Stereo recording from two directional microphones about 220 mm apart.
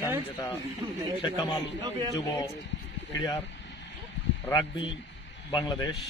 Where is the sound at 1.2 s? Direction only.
15° left (ahead or behind).